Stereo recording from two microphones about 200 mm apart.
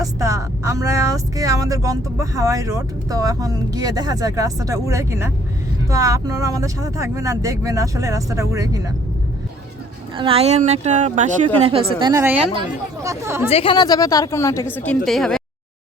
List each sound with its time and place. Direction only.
0.0 s speech: 15° right (ahead or behind)
10.2 s a woman's voice: 30° right (ahead or behind)
12.2 s speech: 5° right (ahead or behind)
13.5 s a woman's voice: 25° left (ahead or behind); by 15.4 s centre (ahead or behind)